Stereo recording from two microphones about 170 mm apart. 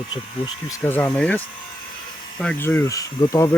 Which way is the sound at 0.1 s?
25° left (ahead or behind).